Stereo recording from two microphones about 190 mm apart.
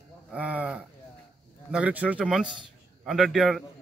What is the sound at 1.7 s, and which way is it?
A man's voice, 5° right (ahead or behind).